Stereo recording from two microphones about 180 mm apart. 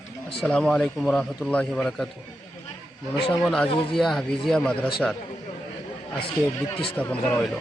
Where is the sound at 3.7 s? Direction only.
30° left (ahead or behind).